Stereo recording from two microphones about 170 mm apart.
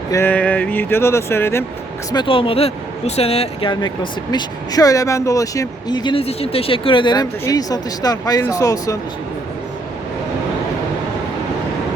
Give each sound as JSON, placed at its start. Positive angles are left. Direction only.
{"t": 0.1, "sound": "speech", "side_deg": 10}
{"t": 2.1, "sound": "speech", "side_deg": 30}